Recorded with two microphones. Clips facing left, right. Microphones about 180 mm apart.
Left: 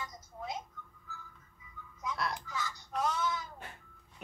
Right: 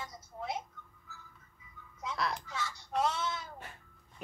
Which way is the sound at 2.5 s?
30° right (ahead or behind).